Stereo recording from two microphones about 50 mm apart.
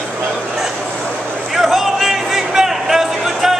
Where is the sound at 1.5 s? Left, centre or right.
Centre.